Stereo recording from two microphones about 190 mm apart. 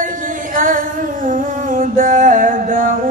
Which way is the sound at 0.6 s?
45° right (ahead or behind).